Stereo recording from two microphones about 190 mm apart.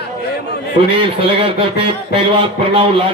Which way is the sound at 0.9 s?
30° right (ahead or behind).